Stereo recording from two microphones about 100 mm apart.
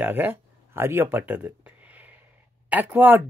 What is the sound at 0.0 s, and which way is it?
Speech, 20° right (ahead or behind).